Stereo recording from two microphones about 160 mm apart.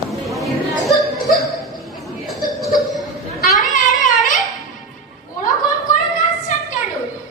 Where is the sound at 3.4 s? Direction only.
70° left (ahead or behind).